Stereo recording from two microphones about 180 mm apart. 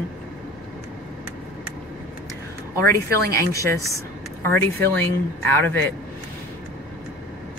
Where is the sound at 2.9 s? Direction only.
15° left (ahead or behind).